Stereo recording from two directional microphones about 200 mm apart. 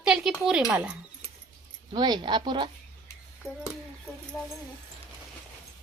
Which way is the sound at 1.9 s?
20° right (ahead or behind).